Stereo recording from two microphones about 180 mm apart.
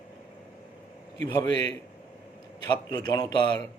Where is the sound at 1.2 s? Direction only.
20° left (ahead or behind).